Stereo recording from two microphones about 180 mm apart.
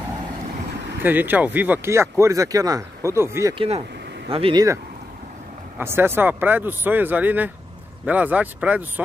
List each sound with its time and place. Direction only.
1.0 s speech: 10° right (ahead or behind)
3.5 s speech: 35° right (ahead or behind)
5.8 s speech: 10° right (ahead or behind)